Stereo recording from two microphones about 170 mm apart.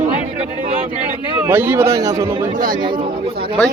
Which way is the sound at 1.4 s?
10° right (ahead or behind).